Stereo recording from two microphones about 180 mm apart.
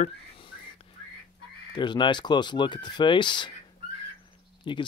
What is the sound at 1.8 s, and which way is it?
Speech, 25° left (ahead or behind).